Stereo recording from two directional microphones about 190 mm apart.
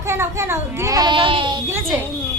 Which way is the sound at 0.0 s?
15° right (ahead or behind).